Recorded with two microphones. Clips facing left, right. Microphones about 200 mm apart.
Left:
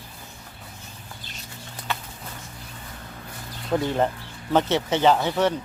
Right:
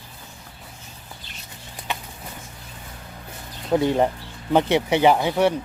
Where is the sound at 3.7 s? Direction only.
15° right (ahead or behind).